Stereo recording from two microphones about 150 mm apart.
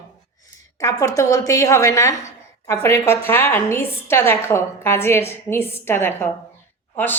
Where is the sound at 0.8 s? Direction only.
20° left (ahead or behind).